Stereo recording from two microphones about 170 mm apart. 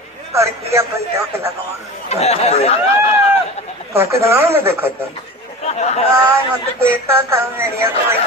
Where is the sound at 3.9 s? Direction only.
15° right (ahead or behind).